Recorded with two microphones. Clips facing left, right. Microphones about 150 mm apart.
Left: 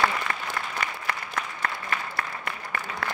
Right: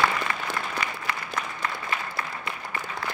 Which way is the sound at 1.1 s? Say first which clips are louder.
Even; 55° left (ahead or behind).